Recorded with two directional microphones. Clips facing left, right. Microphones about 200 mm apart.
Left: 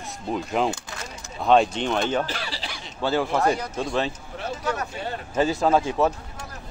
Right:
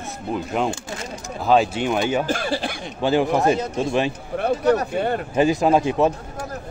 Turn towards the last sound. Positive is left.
turn(degrees=-15)  # may be behind; listen again after turning